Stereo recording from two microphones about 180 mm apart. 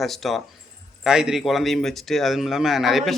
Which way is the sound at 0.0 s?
Centre (ahead or behind).